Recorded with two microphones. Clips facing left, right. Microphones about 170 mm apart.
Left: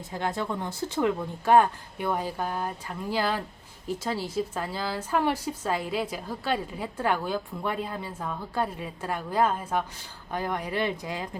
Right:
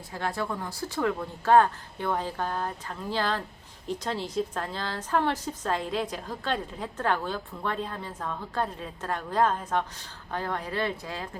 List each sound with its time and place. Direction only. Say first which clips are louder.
0.1 s a woman's voice: left 1 dB; 20° left (ahead or behind)